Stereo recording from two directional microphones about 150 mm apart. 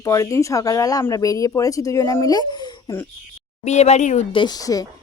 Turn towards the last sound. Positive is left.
turn(degrees=25)  # may be behind; listen again after turning